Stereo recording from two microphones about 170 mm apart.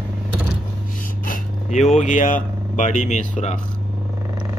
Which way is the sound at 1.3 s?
45° left (ahead or behind).